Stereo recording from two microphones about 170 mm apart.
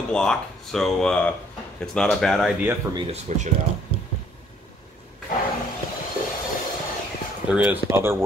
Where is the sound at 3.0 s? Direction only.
40° right (ahead or behind).